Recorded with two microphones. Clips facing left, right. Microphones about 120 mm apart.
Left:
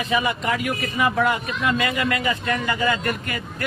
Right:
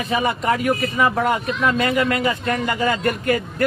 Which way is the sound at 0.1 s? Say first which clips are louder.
Right 3 dB; 45° right (ahead or behind).